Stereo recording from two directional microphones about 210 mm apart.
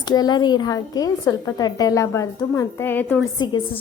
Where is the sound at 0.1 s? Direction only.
20° left (ahead or behind).